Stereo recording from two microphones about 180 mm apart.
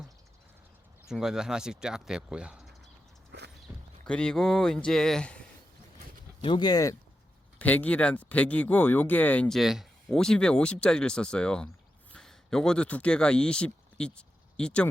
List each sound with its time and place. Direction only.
1.0 s speech: 5° right (ahead or behind)
3.3 s walk: 65° right (ahead or behind)
3.7 s clip-clop: 15° right (ahead or behind)
4.0 s speech: 5° left (ahead or behind)
6.4 s speech: 25° left (ahead or behind)
7.6 s speech: 10° left (ahead or behind)